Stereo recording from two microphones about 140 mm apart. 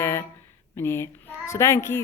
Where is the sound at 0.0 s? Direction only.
20° left (ahead or behind).